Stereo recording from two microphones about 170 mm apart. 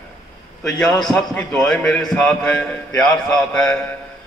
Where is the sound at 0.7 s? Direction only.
5° left (ahead or behind).